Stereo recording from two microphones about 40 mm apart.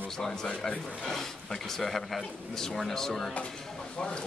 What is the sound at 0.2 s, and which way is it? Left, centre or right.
Speech, centre.